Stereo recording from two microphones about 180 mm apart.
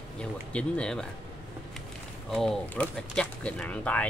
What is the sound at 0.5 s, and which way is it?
Speech, 5° left (ahead or behind).